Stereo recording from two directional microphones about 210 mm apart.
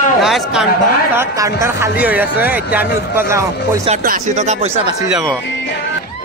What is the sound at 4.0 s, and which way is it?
Speech, 40° right (ahead or behind).